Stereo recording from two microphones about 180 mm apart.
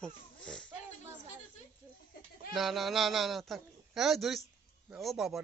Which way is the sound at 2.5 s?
Centre (ahead or behind).